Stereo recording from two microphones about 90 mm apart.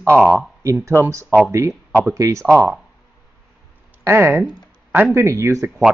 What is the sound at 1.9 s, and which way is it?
Speech, 30° right (ahead or behind).